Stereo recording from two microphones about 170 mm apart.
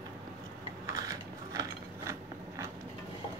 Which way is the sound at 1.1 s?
20° right (ahead or behind).